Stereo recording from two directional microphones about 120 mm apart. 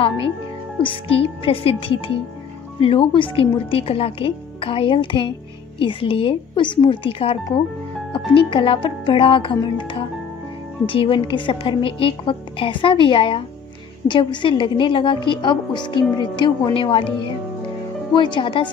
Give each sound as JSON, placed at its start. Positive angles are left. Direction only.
{"t": 0.8, "sound": "a woman's voice", "side_deg": 50}
{"t": 8.4, "sound": "a woman's voice", "side_deg": 45}